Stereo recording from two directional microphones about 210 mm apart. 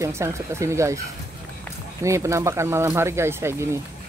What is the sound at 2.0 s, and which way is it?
Speech, 15° right (ahead or behind).